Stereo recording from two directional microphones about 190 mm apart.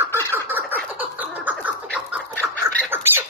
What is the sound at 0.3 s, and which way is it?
Fowl, 10° right (ahead or behind).